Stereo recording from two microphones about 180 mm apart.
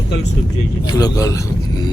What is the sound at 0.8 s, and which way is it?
Speech, 20° left (ahead or behind).